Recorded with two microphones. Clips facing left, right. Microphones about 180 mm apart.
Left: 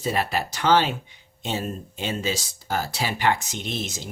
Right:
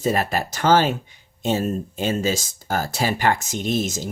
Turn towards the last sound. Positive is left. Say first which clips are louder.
# right 8 dB
turn(degrees=-45)  # may be behind; listen again after turning